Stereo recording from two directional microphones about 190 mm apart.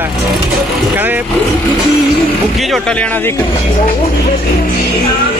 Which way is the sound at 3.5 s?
35° left (ahead or behind).